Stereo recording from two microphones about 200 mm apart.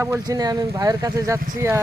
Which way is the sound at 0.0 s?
15° right (ahead or behind).